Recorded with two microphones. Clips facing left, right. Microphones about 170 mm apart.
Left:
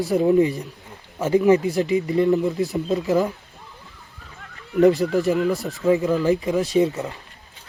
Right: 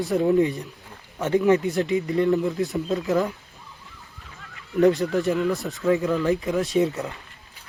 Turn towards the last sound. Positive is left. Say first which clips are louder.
# left 2 dB
turn(degrees=0)  # may be behind; listen again after turning